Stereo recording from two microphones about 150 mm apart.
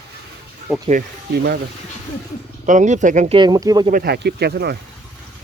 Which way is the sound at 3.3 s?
30° right (ahead or behind).